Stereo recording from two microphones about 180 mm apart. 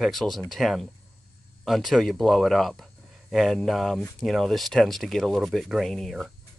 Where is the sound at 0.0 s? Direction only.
Centre (ahead or behind).